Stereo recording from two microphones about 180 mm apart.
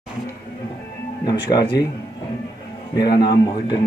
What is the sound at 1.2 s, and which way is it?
Speech, 25° left (ahead or behind).